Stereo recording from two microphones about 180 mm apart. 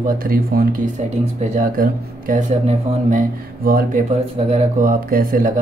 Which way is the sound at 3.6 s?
55° right (ahead or behind).